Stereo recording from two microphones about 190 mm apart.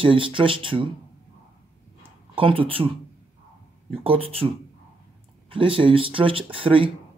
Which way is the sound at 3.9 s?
30° right (ahead or behind).